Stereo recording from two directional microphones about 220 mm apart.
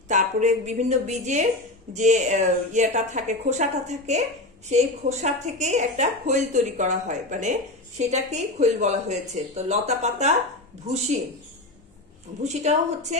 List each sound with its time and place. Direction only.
0.1 s a woman's voice: 35° right (ahead or behind)
12.4 s a woman's voice: 30° right (ahead or behind)